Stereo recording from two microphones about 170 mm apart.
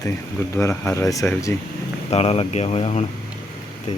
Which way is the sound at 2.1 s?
35° left (ahead or behind).